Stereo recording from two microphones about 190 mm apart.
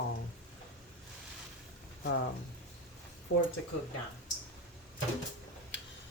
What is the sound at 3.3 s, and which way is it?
Speech, 60° left (ahead or behind).